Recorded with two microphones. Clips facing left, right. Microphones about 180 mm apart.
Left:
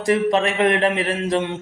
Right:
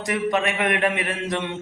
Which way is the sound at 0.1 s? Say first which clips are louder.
Left 5 dB; 30° left (ahead or behind).